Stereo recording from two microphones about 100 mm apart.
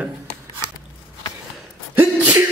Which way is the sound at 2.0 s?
15° right (ahead or behind).